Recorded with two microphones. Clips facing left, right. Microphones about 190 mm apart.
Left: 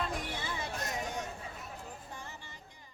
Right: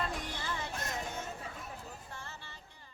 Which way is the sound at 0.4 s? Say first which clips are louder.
Even; 10° left (ahead or behind).